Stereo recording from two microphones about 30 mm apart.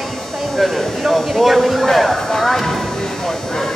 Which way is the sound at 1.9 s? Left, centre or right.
Centre.